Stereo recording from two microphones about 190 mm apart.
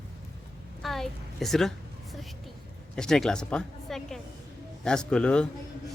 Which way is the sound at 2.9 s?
Centre (ahead or behind).